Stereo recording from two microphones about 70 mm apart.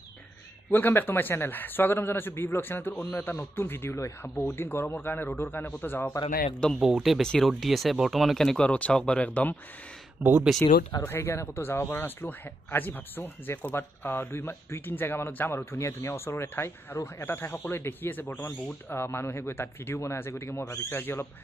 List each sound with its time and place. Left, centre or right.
0.7 s a man's voice: left
6.8 s speech: centre
7.2 s speech: centre
8.6 s speech: centre
9.2 s a man's voice: left
10.2 s speech: centre
10.6 s speech: left
11.0 s speech: left